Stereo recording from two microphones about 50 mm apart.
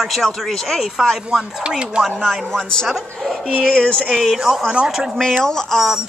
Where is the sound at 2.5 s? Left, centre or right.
Centre.